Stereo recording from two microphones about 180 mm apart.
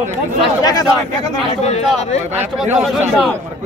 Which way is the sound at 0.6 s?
20° left (ahead or behind).